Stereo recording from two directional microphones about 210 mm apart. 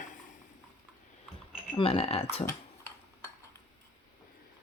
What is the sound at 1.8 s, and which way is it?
Speech, 25° left (ahead or behind).